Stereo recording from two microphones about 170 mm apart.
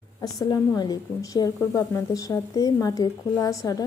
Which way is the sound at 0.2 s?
20° left (ahead or behind).